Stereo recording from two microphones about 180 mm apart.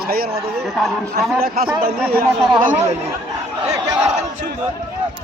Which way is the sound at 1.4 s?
55° right (ahead or behind).